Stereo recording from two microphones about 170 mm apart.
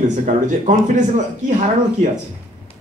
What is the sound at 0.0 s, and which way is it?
A man's voice, 45° right (ahead or behind).